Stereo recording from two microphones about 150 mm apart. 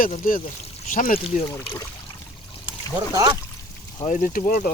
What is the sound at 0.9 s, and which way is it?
Speech, 60° left (ahead or behind).